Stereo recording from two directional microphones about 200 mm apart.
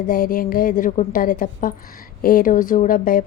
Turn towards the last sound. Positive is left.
turn(degrees=45)  # may be behind; listen again after turning